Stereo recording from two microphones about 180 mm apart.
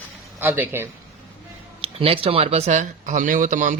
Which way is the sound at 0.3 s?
10° right (ahead or behind).